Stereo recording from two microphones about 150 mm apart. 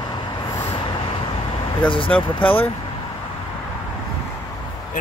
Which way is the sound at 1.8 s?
35° left (ahead or behind).